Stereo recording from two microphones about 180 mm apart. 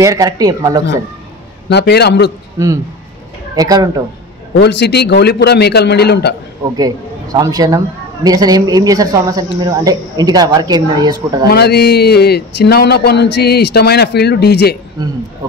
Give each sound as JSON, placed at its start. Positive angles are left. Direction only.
{"t": 0.0, "sound": "a man's voice", "side_deg": -20}
{"t": 1.7, "sound": "a man's voice", "side_deg": 70}
{"t": 3.5, "sound": "a man's voice", "side_deg": -20}
{"t": 4.6, "sound": "a man's voice", "side_deg": 70}
{"t": 6.8, "sound": "a man's voice", "side_deg": -20}
{"t": 11.4, "sound": "a man's voice", "side_deg": 65}
{"t": 15.0, "sound": "a man's voice", "side_deg": -20}